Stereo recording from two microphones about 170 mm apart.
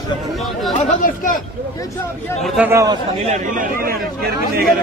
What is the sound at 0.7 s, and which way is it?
Speech, 55° left (ahead or behind).